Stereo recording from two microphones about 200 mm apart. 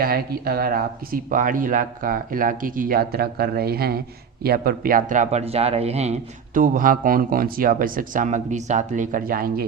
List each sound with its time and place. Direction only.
0.0 s speech: 50° right (ahead or behind)